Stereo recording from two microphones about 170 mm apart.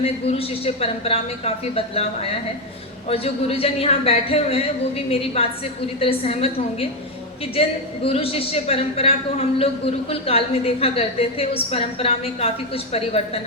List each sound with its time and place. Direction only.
0.0 s a woman's voice: 35° left (ahead or behind)
3.1 s a woman's voice: 35° left (ahead or behind)
8.0 s a woman's voice: 35° left (ahead or behind)